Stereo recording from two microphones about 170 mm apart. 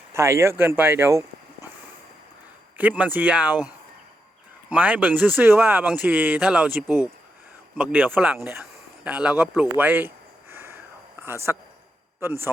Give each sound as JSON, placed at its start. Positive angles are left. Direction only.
{"t": 0.1, "sound": "speech", "side_deg": -15}
{"t": 2.7, "sound": "speech", "side_deg": -10}
{"t": 4.7, "sound": "speech", "side_deg": -10}
{"t": 10.5, "sound": "a sound", "side_deg": -15}
{"t": 11.2, "sound": "speech", "side_deg": -15}